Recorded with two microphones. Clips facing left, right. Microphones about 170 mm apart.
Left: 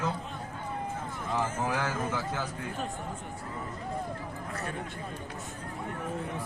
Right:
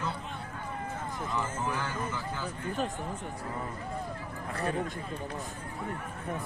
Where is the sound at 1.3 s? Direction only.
90° left.